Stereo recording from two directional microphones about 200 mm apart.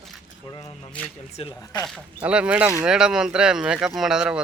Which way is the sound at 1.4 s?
20° left (ahead or behind).